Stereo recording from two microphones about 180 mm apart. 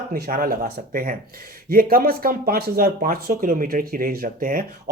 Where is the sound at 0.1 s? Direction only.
55° right (ahead or behind).